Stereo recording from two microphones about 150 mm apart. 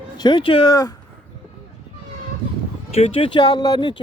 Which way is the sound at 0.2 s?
30° left (ahead or behind).